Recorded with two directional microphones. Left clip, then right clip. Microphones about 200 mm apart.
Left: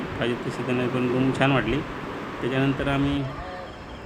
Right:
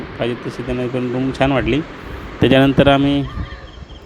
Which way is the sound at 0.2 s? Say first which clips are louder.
Right 6 dB; 30° right (ahead or behind).